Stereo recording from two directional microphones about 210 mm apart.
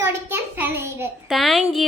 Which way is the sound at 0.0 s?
10° right (ahead or behind).